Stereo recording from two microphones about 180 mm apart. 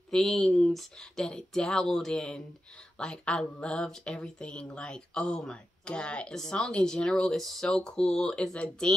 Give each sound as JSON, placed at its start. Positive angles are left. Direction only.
{"t": 0.1, "sound": "speech", "side_deg": 5}